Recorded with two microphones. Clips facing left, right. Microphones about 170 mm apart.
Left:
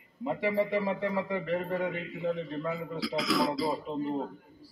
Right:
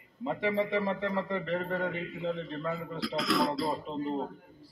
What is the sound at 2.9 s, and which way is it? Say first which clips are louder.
Speech: even; centre (ahead or behind).